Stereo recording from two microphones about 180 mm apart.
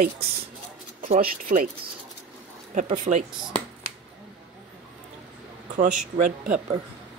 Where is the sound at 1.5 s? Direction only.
45° right (ahead or behind).